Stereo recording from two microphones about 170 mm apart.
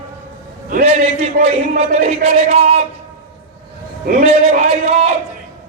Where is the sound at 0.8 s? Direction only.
40° right (ahead or behind).